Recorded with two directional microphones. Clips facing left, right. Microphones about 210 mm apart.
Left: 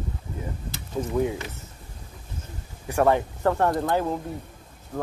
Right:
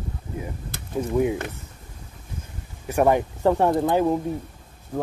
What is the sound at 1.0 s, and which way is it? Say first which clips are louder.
Speech: right 3 dB; 15° right (ahead or behind).